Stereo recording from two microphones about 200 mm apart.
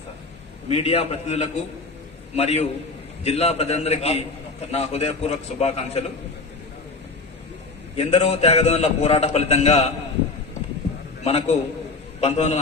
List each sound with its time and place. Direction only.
0.7 s a man's voice: 30° left (ahead or behind)
7.9 s a man's voice: 30° left (ahead or behind)
11.2 s a man's voice: 35° left (ahead or behind)